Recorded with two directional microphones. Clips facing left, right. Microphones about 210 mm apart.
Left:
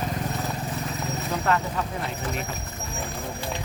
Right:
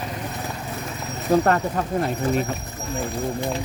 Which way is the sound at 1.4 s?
45° right (ahead or behind).